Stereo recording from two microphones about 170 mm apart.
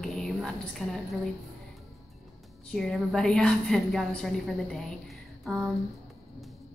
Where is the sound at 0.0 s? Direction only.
5° left (ahead or behind).